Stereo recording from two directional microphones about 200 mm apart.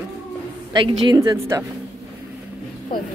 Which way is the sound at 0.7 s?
25° right (ahead or behind).